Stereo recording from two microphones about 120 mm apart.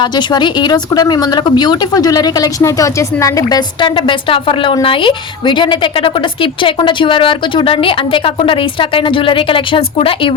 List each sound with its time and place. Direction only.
0.0 s speech: 40° left (ahead or behind)